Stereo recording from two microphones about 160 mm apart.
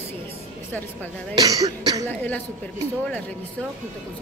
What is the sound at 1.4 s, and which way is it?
Speech, 25° right (ahead or behind).